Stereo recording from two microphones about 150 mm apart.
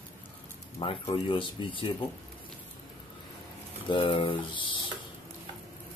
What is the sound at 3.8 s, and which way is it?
Speech, 35° left (ahead or behind).